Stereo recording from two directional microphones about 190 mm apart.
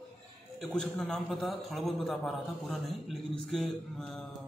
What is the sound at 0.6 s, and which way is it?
A man's voice, 5° left (ahead or behind).